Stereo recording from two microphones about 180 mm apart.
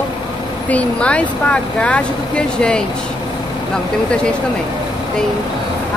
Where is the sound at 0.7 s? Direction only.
5° left (ahead or behind).